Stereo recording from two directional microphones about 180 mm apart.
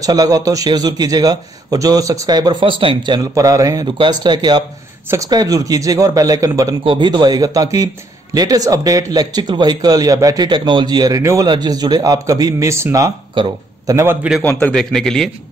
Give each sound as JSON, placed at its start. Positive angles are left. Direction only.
{"t": 0.0, "sound": "a man's voice", "side_deg": -20}
{"t": 13.9, "sound": "a man's voice", "side_deg": -10}
{"t": 14.4, "sound": "a man's voice", "side_deg": 10}